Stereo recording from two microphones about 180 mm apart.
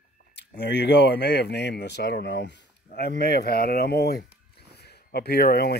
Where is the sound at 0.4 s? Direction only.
70° left (ahead or behind).